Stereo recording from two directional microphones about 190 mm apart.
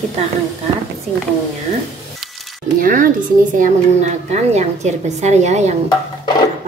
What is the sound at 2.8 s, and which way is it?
A woman's voice, 45° right (ahead or behind).